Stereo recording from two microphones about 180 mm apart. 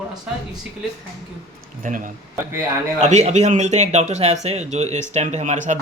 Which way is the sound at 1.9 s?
45° right (ahead or behind).